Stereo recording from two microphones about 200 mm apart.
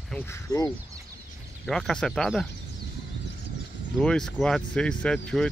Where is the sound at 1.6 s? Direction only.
5° left (ahead or behind).